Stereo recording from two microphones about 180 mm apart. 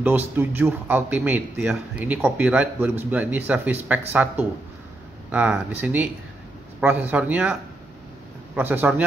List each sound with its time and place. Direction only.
0.0 s speech: 10° right (ahead or behind)
8.5 s speech: 10° right (ahead or behind)